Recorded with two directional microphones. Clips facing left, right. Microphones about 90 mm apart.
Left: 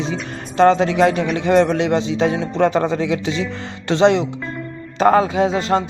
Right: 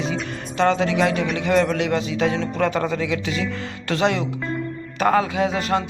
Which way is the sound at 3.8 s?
25° left (ahead or behind).